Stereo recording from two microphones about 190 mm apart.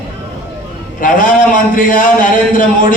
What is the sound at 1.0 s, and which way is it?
A man's voice, 45° left (ahead or behind).